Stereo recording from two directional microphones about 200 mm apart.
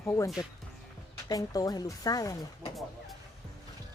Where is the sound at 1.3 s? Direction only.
20° left (ahead or behind).